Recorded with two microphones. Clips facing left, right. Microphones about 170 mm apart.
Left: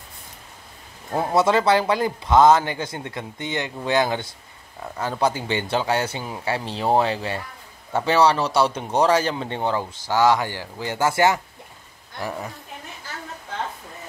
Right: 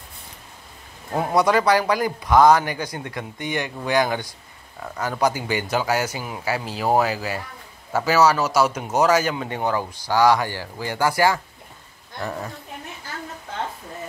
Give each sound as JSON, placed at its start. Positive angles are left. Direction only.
{"t": 1.1, "sound": "speech", "side_deg": 25}
{"t": 12.2, "sound": "a woman's voice", "side_deg": 5}